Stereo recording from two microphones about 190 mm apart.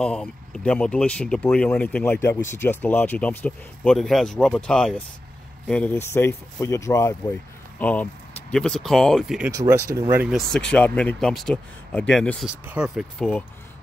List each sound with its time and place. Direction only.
0.0 s speech: 5° left (ahead or behind)
9.5 s speech: 15° right (ahead or behind)
10.2 s speech: centre (ahead or behind)